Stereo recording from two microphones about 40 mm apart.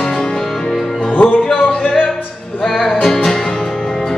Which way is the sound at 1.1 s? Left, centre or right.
Left.